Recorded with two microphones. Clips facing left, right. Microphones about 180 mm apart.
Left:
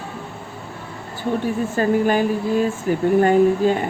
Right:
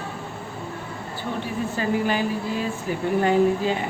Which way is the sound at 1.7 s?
45° left (ahead or behind).